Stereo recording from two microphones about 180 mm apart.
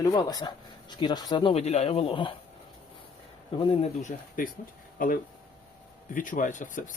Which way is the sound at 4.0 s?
50° left (ahead or behind).